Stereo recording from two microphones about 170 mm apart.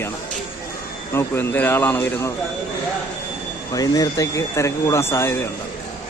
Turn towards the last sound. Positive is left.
turn(degrees=15)  # may be behind; listen again after turning